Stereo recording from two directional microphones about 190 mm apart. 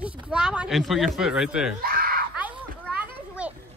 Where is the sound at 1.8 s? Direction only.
50° right (ahead or behind).